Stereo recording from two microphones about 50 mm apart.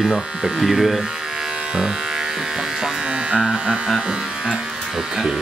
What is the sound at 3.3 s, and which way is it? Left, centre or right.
Electric shaver, right.